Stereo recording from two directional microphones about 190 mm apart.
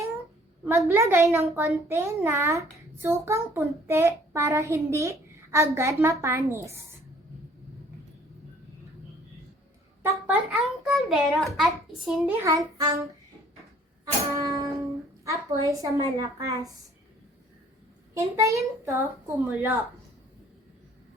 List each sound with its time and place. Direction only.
0.6 s a child's voice: 10° right (ahead or behind)
10.4 s a child's voice: centre (ahead or behind)
12.4 s a child's voice: 15° right (ahead or behind)
14.0 s music: 20° right (ahead or behind)
15.2 s a child's voice: 15° right (ahead or behind)
18.1 s a child's voice: 15° right (ahead or behind)